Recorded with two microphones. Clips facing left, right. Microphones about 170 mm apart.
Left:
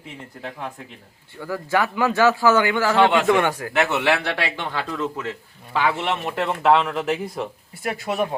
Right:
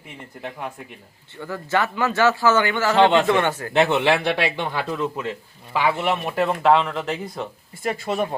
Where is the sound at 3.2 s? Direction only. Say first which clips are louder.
Left 1 dB; 10° left (ahead or behind).